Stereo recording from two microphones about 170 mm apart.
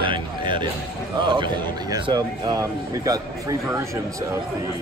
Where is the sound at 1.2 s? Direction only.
25° right (ahead or behind).